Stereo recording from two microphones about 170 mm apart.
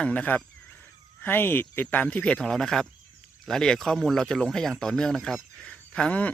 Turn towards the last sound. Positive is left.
turn(degrees=5)  # may be behind; listen again after turning